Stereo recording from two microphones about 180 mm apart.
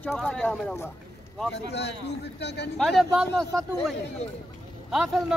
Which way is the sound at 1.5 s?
70° left (ahead or behind).